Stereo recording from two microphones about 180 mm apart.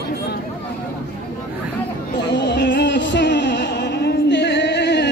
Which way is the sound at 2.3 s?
70° left (ahead or behind).